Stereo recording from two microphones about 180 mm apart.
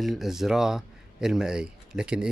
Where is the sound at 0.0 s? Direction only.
Centre (ahead or behind).